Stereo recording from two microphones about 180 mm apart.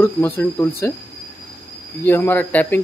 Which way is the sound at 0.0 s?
10° left (ahead or behind).